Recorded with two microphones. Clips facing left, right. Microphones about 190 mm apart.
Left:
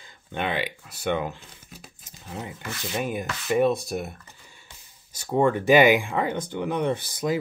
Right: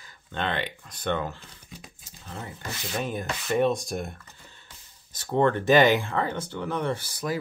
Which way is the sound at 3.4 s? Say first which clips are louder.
Left 2 dB; 5° left (ahead or behind).